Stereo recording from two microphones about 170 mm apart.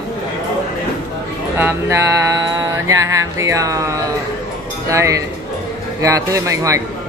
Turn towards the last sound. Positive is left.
turn(degrees=-20)  # may be behind; listen again after turning